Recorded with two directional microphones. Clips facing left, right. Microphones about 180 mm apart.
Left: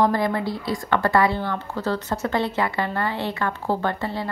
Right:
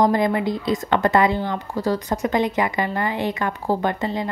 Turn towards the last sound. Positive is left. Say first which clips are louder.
# right 3 dB
turn(degrees=-15)  # may be behind; listen again after turning